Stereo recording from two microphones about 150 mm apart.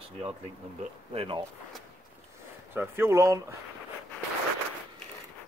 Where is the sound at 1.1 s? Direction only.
35° right (ahead or behind).